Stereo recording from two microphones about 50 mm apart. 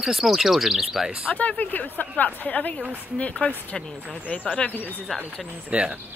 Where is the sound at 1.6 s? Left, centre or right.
Left.